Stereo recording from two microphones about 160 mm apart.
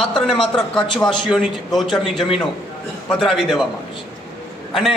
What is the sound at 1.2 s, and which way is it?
A man's voice, 5° right (ahead or behind).